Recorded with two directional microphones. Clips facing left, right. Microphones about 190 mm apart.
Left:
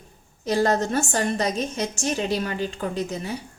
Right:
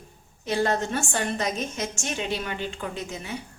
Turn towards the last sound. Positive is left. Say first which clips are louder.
# left 6 dB
turn(degrees=35)  # may be behind; listen again after turning